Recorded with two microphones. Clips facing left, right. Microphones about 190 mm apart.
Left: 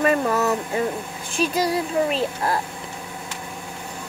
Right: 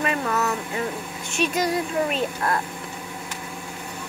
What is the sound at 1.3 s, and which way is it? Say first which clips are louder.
Speech: left 1 dB; 30° left (ahead or behind).